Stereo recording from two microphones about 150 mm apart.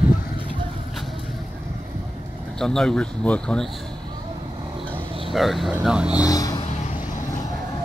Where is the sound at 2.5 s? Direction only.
5° left (ahead or behind).